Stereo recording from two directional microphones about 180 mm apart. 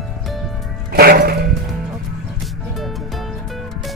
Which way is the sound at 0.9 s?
55° right (ahead or behind).